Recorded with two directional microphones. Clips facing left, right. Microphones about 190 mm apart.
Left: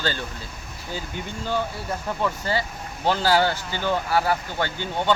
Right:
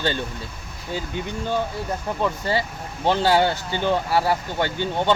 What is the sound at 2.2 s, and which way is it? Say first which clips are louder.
Speech: right 2 dB; 25° right (ahead or behind).